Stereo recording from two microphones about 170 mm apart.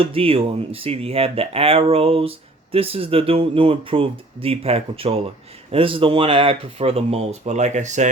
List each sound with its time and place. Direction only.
0.0 s speech: 35° right (ahead or behind)